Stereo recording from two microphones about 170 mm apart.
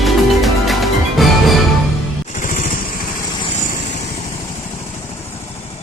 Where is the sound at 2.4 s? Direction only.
50° left (ahead or behind).